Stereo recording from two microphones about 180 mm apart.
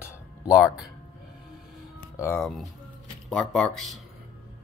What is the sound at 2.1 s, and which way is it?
Speech, 15° left (ahead or behind).